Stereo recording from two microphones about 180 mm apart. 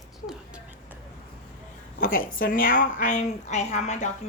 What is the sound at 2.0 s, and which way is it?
A woman's voice, 50° left (ahead or behind).